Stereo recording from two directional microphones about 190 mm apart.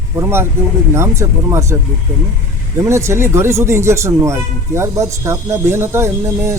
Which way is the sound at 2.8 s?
15° right (ahead or behind).